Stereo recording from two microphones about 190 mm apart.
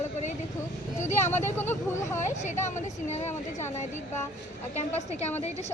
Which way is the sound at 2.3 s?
40° left (ahead or behind).